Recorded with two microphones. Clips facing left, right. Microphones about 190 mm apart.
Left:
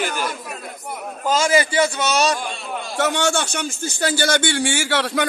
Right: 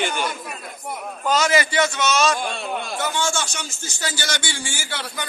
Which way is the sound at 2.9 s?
85° left.